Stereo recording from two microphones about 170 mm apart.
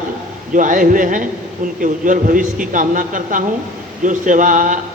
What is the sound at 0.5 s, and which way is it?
Speech, 50° right (ahead or behind).